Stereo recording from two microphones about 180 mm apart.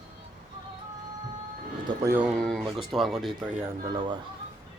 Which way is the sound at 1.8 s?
15° right (ahead or behind).